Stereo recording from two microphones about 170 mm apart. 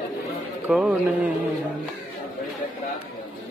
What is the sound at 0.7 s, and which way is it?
Speech, 5° right (ahead or behind).